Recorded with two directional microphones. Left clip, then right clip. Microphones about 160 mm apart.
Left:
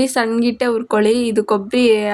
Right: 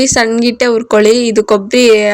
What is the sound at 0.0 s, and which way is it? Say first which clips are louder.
Speech: right 6 dB; 15° right (ahead or behind).